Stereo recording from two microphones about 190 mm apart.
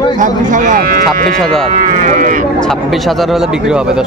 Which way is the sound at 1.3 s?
5° left (ahead or behind).